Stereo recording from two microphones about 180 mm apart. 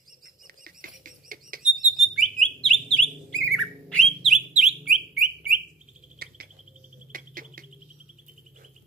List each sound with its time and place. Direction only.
0.7 s rodents: 50° right (ahead or behind)
1.6 s bird: centre (ahead or behind)
6.2 s bird: 60° right (ahead or behind)
7.1 s music: 50° right (ahead or behind)